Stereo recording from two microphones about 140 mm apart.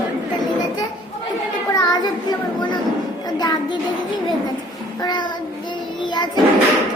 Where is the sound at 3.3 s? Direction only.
30° left (ahead or behind).